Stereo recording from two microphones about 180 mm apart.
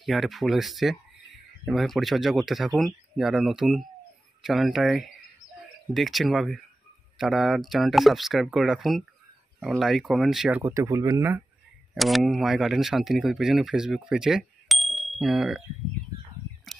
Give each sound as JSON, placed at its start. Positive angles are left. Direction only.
{"t": 0.0, "sound": "speech", "side_deg": 0}
{"t": 10.6, "sound": "speech", "side_deg": -15}
{"t": 11.9, "sound": "speech", "side_deg": 0}